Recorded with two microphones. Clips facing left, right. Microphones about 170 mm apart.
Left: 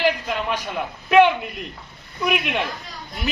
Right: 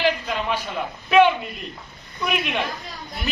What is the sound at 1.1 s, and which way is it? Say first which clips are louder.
A man's voice: left 1 dB; 10° left (ahead or behind).